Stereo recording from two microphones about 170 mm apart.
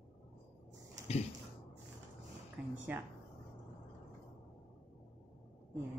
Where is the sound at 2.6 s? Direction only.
5° right (ahead or behind).